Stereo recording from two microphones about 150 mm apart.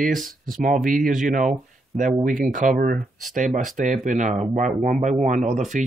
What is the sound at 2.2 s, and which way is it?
Speech, 60° right (ahead or behind).